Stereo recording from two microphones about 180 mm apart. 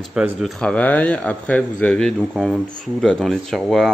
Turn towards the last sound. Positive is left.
turn(degrees=0)  # may be behind; listen again after turning